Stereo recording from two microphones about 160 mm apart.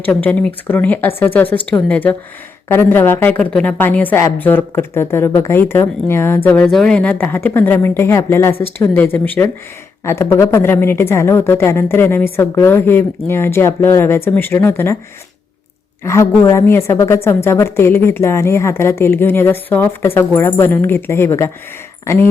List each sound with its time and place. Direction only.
0.0 s a woman's voice: 10° left (ahead or behind)
16.0 s a woman's voice: 20° left (ahead or behind)